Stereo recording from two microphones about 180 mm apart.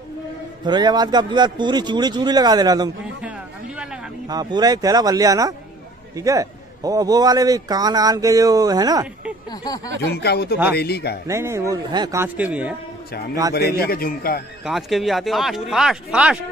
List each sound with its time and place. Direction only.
0.7 s a man's voice: 25° right (ahead or behind)
3.2 s a sound: 5° right (ahead or behind)
4.3 s a man's voice: 20° right (ahead or behind)
10.1 s speech: 65° left (ahead or behind)
11.2 s a man's voice: 15° right (ahead or behind)
13.1 s speech: 60° left (ahead or behind)
13.4 s a man's voice: 15° right (ahead or behind)
13.7 s speech: 55° left (ahead or behind)
14.6 s speech: centre (ahead or behind)